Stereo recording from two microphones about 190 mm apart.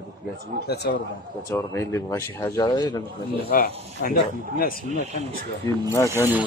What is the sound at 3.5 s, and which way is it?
Speech, 50° left (ahead or behind).